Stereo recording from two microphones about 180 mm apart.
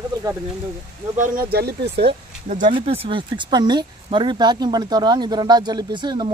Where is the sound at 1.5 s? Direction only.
65° right (ahead or behind).